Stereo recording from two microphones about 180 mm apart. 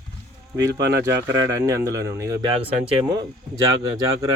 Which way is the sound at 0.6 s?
20° right (ahead or behind).